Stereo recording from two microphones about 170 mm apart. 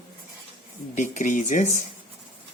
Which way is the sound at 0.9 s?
45° left (ahead or behind).